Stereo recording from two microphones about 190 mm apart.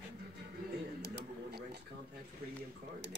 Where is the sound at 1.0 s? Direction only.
60° right (ahead or behind).